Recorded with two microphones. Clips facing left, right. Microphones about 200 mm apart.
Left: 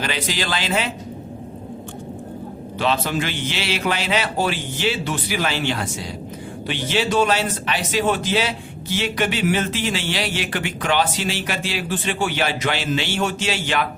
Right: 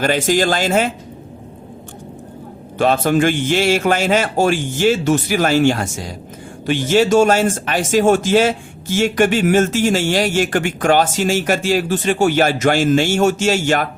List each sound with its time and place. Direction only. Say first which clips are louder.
0.0 s speech: right 10 dB; 45° right (ahead or behind)
2.7 s speech: right 7 dB; 50° right (ahead or behind)